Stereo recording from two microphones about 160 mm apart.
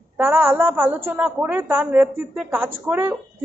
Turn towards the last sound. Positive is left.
turn(degrees=-10)  # may be behind; listen again after turning